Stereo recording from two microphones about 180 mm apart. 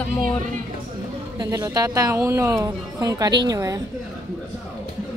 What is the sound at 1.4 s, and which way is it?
A woman's voice, 20° right (ahead or behind).